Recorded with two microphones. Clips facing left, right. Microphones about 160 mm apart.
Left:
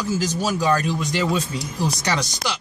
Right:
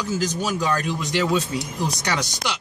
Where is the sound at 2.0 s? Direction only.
Centre (ahead or behind).